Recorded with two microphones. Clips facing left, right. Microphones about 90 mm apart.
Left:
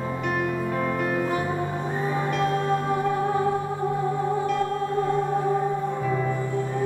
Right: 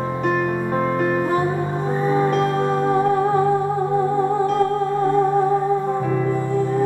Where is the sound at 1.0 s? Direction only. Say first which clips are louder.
Right 6 dB; 35° right (ahead or behind).